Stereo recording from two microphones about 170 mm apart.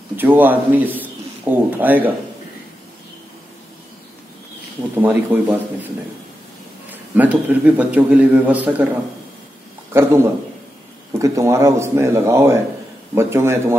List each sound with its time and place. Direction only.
0.1 s a man's voice: 10° right (ahead or behind)
4.9 s a man's voice: 10° right (ahead or behind)
6.9 s a man's voice: 10° right (ahead or behind)
9.9 s a man's voice: 15° right (ahead or behind)